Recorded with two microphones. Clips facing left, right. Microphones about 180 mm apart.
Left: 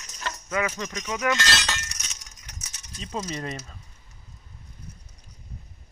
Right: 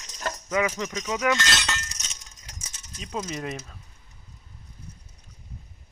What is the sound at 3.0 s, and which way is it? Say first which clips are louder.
Speech: even; centre (ahead or behind).